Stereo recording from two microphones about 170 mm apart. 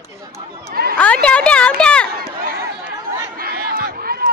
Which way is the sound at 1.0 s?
5° left (ahead or behind).